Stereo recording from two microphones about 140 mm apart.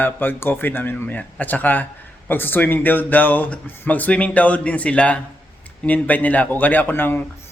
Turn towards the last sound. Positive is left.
turn(degrees=15)  # may be behind; listen again after turning